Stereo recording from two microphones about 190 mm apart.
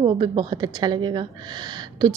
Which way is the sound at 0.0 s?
25° right (ahead or behind).